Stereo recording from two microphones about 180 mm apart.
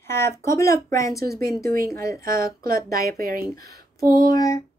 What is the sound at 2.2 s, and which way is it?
Speech, 55° right (ahead or behind).